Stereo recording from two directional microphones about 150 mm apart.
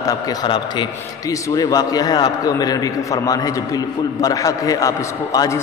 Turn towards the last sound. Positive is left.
turn(degrees=20)  # may be behind; listen again after turning